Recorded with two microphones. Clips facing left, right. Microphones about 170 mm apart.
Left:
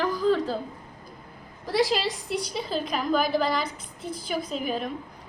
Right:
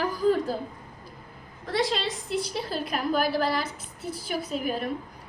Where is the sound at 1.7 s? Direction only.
5° left (ahead or behind).